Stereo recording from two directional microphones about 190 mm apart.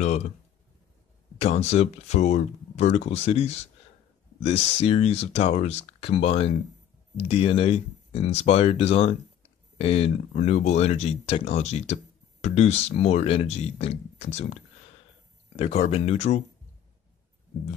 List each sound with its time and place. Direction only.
1.4 s speech: 35° left (ahead or behind)